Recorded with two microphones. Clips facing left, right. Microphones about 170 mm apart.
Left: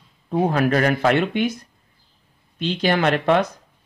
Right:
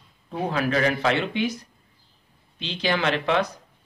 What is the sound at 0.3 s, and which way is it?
A man's voice, 50° left (ahead or behind).